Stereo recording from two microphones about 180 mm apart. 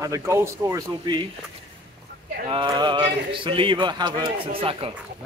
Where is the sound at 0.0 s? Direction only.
15° right (ahead or behind).